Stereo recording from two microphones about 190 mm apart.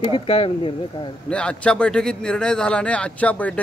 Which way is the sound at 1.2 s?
5° left (ahead or behind).